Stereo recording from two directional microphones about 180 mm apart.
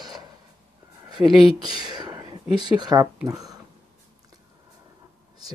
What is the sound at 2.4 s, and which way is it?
Speech, 30° left (ahead or behind).